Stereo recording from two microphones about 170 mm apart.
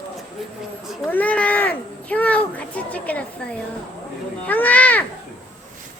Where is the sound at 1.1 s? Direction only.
10° left (ahead or behind).